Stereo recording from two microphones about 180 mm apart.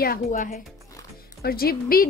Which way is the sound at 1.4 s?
55° left (ahead or behind).